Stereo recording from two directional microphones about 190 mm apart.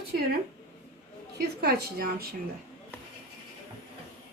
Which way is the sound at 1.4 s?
60° right (ahead or behind).